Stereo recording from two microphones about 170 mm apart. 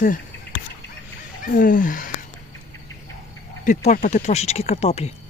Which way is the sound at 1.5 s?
55° left (ahead or behind).